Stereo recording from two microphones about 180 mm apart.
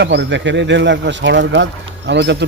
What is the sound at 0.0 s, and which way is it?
Speech, 75° right (ahead or behind).